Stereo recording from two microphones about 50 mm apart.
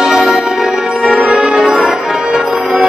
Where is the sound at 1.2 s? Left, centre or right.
Centre.